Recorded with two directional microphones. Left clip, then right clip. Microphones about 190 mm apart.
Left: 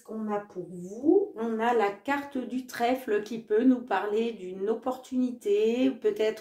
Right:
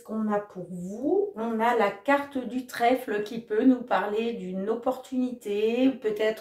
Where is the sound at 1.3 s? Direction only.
35° left (ahead or behind).